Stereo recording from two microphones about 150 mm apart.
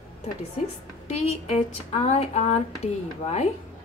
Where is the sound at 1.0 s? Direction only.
45° left (ahead or behind).